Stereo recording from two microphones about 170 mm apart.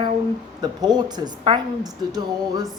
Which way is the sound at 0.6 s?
25° right (ahead or behind).